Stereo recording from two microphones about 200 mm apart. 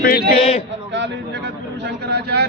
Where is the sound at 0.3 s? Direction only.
30° left (ahead or behind).